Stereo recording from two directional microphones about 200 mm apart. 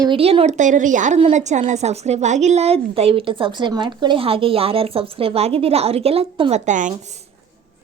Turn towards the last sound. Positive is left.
turn(degrees=-35)  # may be behind; listen again after turning